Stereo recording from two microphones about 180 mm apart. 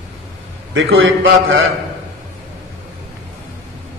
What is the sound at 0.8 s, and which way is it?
Speech, 90° right.